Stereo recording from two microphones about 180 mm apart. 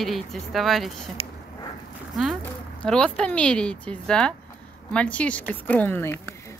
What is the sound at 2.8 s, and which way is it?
A woman's voice, 5° left (ahead or behind).